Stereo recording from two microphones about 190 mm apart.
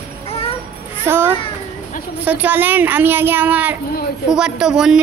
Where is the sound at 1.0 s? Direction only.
10° right (ahead or behind).